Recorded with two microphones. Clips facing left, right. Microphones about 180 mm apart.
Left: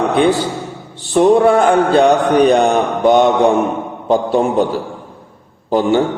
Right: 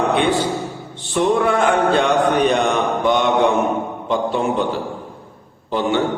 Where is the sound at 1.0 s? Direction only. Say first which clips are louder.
Left 7 dB; 35° left (ahead or behind).